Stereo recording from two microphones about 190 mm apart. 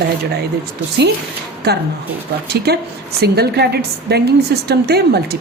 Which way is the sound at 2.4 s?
60° right (ahead or behind).